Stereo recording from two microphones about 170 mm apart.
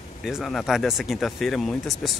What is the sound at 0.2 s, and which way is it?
Speech, centre (ahead or behind).